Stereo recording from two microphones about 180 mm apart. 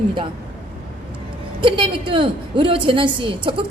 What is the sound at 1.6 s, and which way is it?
A woman's voice, 30° right (ahead or behind).